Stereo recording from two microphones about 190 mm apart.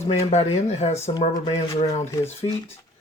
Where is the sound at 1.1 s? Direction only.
25° left (ahead or behind).